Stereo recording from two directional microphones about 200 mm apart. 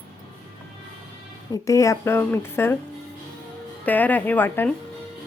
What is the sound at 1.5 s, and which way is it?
Speech, 15° left (ahead or behind).